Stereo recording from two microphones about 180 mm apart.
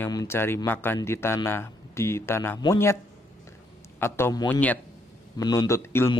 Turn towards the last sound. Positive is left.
turn(degrees=15)  # may be behind; listen again after turning